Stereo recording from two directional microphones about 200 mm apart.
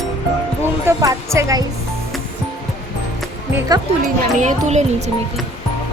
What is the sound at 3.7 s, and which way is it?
Speech, 20° right (ahead or behind).